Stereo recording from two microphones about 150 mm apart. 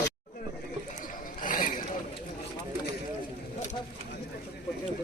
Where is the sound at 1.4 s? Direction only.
65° left (ahead or behind).